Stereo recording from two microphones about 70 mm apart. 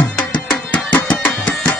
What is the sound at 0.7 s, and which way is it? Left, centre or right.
Music, left.